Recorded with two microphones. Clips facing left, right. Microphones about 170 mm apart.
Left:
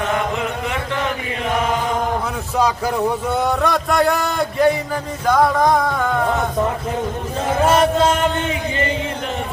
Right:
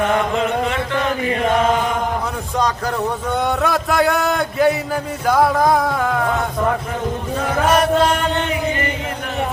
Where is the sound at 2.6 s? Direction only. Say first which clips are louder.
Left 2 dB; 10° left (ahead or behind).